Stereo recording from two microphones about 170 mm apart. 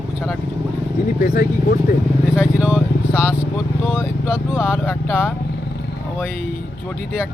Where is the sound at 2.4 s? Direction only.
10° right (ahead or behind).